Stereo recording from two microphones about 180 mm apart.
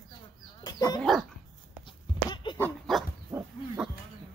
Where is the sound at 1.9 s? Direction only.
25° left (ahead or behind).